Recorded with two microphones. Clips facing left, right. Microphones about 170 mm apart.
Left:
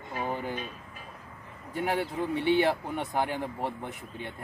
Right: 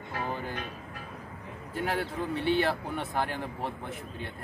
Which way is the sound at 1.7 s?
15° left (ahead or behind).